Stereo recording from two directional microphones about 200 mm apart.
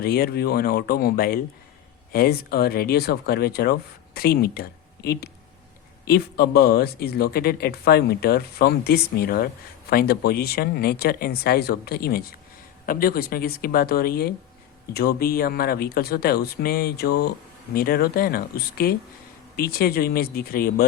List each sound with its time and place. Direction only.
0.0 s speech: 50° left (ahead or behind)